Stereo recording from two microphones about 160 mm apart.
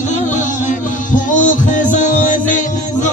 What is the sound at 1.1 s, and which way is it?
Music, 55° left (ahead or behind).